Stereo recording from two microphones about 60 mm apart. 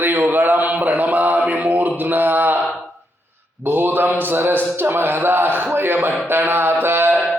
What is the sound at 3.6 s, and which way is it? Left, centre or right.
Mantra, right.